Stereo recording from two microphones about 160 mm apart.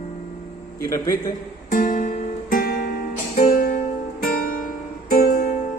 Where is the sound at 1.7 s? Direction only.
60° left (ahead or behind).